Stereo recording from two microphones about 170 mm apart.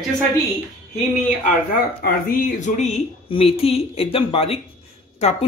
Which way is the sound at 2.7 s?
40° left (ahead or behind).